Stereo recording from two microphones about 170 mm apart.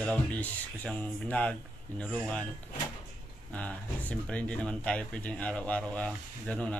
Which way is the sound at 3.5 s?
10° left (ahead or behind).